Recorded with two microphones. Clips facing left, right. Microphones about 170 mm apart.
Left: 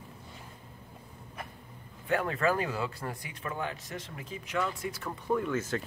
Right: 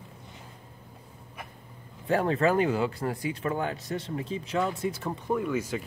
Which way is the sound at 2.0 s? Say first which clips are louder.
Right 4 dB; 30° right (ahead or behind).